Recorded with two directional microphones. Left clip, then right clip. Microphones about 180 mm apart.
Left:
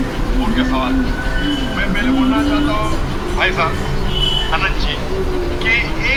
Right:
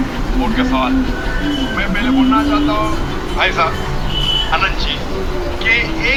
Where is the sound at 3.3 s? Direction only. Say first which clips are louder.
Right 2 dB; 20° right (ahead or behind).